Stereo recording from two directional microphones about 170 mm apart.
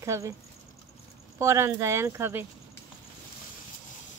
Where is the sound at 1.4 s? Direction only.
15° right (ahead or behind).